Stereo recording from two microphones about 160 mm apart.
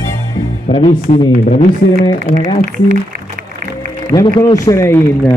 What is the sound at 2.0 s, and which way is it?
Speech, 25° left (ahead or behind).